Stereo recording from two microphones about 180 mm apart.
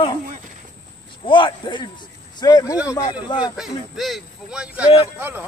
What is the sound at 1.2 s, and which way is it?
Speech, 25° left (ahead or behind).